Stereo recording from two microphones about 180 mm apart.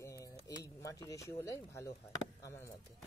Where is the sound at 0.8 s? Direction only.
20° left (ahead or behind).